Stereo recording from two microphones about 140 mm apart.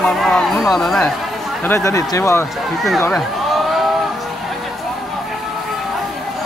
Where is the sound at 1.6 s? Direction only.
20° left (ahead or behind).